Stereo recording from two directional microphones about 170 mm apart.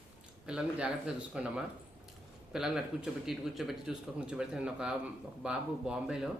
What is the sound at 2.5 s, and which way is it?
Speech, 5° right (ahead or behind).